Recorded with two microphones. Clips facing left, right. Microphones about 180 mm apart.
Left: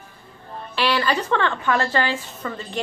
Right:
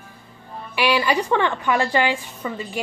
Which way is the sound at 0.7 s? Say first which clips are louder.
Right 2 dB; 10° right (ahead or behind).